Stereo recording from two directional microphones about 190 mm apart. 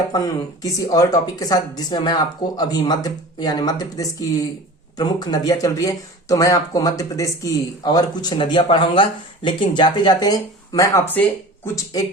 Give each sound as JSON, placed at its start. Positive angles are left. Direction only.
{"t": 0.6, "sound": "speech", "side_deg": 15}